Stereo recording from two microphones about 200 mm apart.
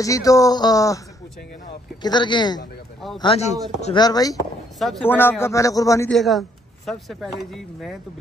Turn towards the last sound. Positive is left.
turn(degrees=0)  # may be behind; listen again after turning